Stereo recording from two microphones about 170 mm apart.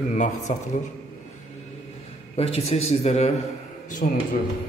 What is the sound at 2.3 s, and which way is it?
Speech, 35° left (ahead or behind).